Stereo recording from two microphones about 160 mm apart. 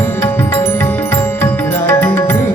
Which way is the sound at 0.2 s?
15° left (ahead or behind).